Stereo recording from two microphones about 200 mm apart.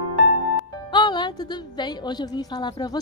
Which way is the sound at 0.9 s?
20° left (ahead or behind).